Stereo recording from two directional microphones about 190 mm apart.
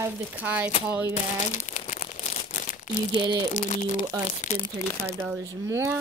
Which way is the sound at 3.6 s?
40° left (ahead or behind).